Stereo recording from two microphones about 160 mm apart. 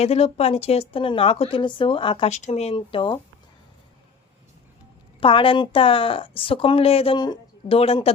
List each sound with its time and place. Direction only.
0.0 s a woman's voice: 40° left (ahead or behind)
2.3 s a woman's voice: 45° left (ahead or behind)
5.2 s a woman's voice: 35° left (ahead or behind)